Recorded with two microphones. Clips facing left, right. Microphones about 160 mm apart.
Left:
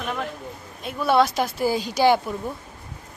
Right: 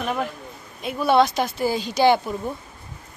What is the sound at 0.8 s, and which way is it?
Speech, 5° right (ahead or behind).